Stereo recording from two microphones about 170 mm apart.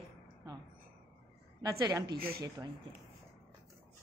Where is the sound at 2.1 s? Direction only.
60° right (ahead or behind).